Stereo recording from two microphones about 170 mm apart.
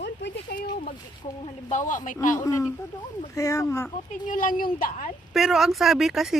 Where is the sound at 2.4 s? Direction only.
20° left (ahead or behind).